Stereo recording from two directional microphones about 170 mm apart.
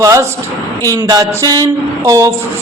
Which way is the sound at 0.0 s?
20° right (ahead or behind).